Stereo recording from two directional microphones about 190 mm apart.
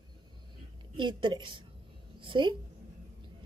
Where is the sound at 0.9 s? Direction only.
25° right (ahead or behind).